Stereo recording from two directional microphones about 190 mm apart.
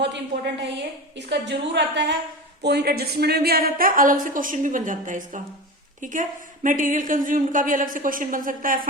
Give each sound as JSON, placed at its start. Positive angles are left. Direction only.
{"t": 0.0, "sound": "a woman's voice", "side_deg": -65}